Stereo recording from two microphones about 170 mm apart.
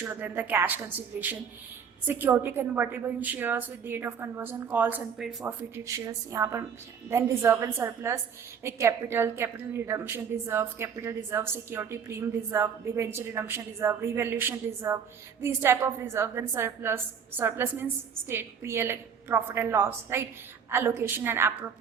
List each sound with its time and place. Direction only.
0.0 s a woman's voice: 10° right (ahead or behind)